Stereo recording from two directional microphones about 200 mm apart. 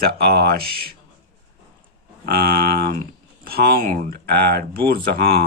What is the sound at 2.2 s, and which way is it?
Speech, 50° right (ahead or behind).